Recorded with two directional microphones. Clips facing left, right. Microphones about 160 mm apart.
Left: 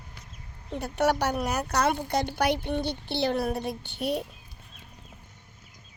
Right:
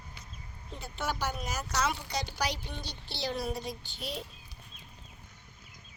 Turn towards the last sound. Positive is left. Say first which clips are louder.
# left 10 dB
turn(degrees=60)  # may be behind; listen again after turning